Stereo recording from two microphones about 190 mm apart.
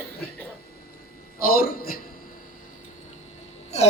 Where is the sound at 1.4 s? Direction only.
50° left (ahead or behind).